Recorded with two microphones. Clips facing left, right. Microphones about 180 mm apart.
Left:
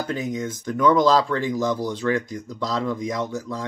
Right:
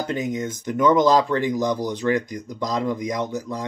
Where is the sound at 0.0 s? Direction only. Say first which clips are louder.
Right 1 dB; 20° right (ahead or behind).